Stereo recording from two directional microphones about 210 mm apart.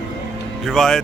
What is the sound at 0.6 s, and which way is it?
Speech, centre (ahead or behind).